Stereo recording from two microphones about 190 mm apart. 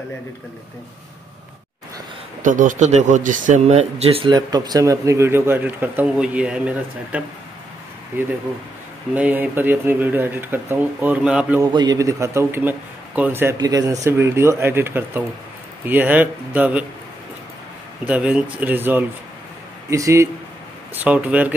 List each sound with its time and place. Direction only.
2.4 s speech: 45° right (ahead or behind); by 11.6 s 5° right (ahead or behind)
11.6 s speech: 20° right (ahead or behind)
18.0 s speech: 5° right (ahead or behind)